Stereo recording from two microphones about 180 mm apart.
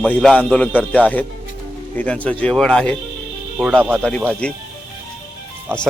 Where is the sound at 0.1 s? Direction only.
5° left (ahead or behind).